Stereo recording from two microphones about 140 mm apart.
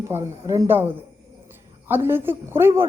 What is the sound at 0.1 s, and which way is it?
Speech, 20° right (ahead or behind).